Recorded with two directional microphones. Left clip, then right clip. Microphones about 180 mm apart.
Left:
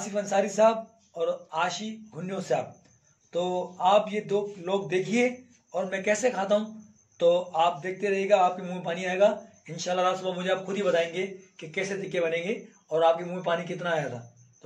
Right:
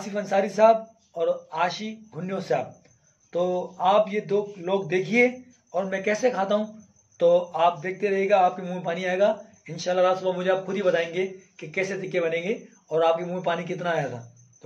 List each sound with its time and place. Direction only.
0.0 s a man's voice: 20° right (ahead or behind)